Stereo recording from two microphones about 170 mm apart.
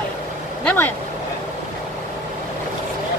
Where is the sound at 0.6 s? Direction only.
10° left (ahead or behind).